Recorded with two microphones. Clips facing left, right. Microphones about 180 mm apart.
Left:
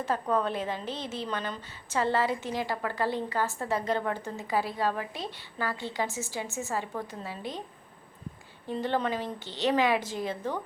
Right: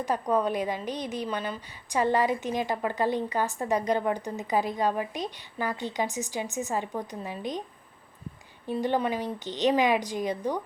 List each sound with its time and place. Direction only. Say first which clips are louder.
0.0 s a woman's voice: right 2 dB; 15° right (ahead or behind)
8.6 s a woman's voice: right 2 dB; 15° right (ahead or behind)